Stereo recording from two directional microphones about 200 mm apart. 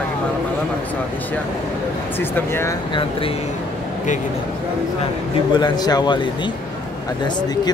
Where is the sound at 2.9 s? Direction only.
25° left (ahead or behind).